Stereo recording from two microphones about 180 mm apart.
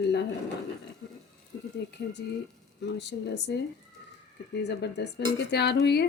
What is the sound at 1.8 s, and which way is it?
Speech, 75° left (ahead or behind).